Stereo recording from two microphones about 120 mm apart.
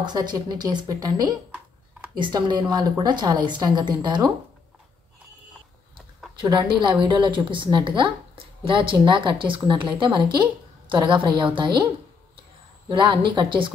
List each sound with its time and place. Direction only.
0.0 s a woman's voice: 35° right (ahead or behind)
6.4 s a woman's voice: 40° right (ahead or behind)